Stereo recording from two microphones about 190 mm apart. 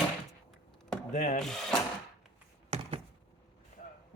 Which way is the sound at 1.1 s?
40° left (ahead or behind).